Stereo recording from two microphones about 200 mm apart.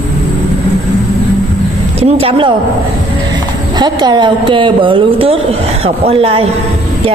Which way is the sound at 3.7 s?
20° right (ahead or behind).